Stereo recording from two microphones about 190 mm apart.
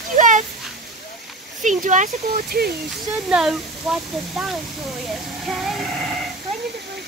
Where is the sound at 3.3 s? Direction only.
5° right (ahead or behind).